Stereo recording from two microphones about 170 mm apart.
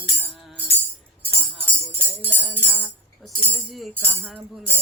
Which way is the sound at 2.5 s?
10° right (ahead or behind).